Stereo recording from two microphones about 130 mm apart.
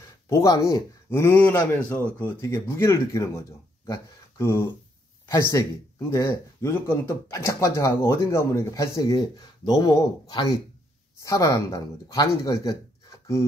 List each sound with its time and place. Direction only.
0.3 s speech: 25° left (ahead or behind)